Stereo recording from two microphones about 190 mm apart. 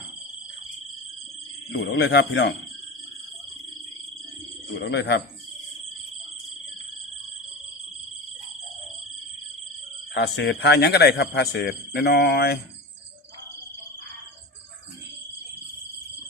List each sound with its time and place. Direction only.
1.7 s a man's voice: 65° left (ahead or behind)
4.9 s a man's voice: 65° left (ahead or behind)
10.2 s a man's voice: 60° left (ahead or behind)